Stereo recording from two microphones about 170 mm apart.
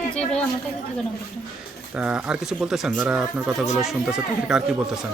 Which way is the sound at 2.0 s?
5° right (ahead or behind).